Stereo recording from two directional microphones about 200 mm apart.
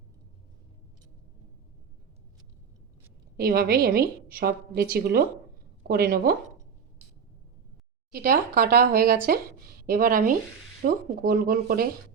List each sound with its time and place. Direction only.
3.3 s a woman's voice: 50° right (ahead or behind)
8.1 s a woman's voice: 45° right (ahead or behind)